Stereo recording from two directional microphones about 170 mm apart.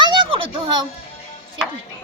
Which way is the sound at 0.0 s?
30° right (ahead or behind).